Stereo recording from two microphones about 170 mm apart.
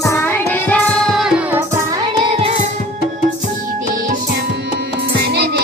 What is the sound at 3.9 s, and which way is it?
Music, 50° right (ahead or behind).